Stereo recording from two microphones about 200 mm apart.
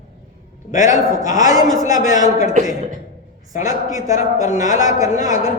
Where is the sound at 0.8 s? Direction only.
15° right (ahead or behind).